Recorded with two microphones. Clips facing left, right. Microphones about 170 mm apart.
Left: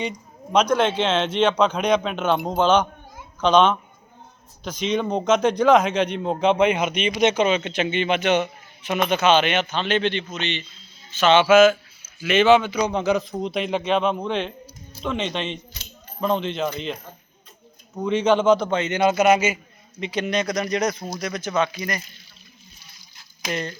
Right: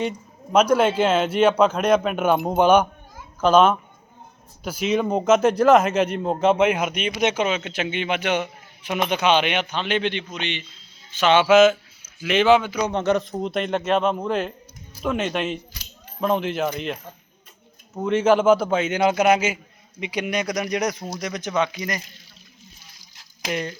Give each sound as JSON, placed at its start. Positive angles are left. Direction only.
{"t": 0.5, "sound": "a man's voice", "side_deg": -10}
{"t": 2.4, "sound": "speech", "side_deg": -25}
{"t": 3.4, "sound": "a man's voice", "side_deg": -5}
{"t": 12.9, "sound": "a man's voice", "side_deg": 0}
{"t": 18.0, "sound": "a man's voice", "side_deg": -5}
{"t": 23.5, "sound": "a man's voice", "side_deg": -10}